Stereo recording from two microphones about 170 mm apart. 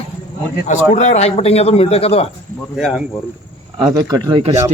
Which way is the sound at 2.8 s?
Centre (ahead or behind).